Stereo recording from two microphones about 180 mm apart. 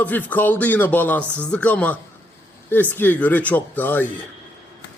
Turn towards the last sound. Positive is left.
turn(degrees=10)  # may be behind; listen again after turning